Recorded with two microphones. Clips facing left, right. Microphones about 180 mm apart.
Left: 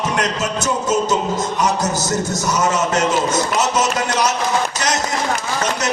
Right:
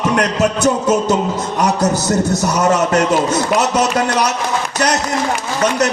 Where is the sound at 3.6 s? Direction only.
60° right (ahead or behind).